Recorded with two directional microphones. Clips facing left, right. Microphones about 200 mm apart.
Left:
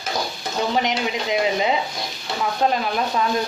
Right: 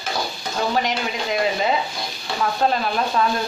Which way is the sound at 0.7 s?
20° left (ahead or behind).